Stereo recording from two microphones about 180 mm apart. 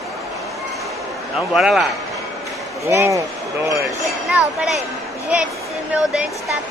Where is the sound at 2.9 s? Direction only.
15° right (ahead or behind).